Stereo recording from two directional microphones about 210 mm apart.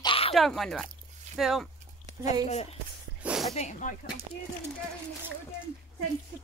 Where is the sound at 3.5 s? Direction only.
35° left (ahead or behind).